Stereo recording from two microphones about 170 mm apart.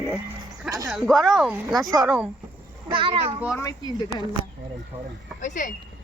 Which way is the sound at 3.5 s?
20° left (ahead or behind).